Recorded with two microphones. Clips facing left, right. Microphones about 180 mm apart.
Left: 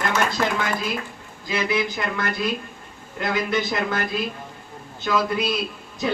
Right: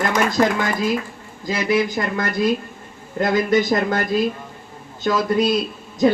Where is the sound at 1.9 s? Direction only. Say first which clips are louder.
Right 4 dB; 40° right (ahead or behind).